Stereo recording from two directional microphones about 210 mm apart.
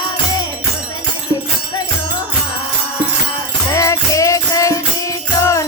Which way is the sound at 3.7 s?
15° left (ahead or behind).